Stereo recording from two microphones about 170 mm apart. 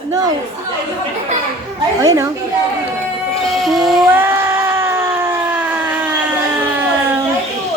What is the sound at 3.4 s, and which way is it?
Child singing, centre (ahead or behind).